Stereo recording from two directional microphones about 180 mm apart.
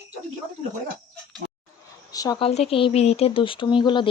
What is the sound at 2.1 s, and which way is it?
Speech, 20° left (ahead or behind).